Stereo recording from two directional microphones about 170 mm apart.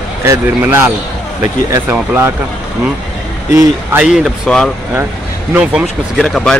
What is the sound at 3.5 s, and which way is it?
Speech, 10° right (ahead or behind).